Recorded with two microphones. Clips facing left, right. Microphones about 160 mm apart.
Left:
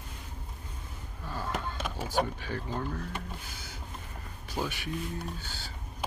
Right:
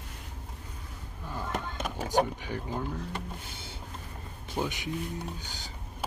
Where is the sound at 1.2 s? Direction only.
15° right (ahead or behind).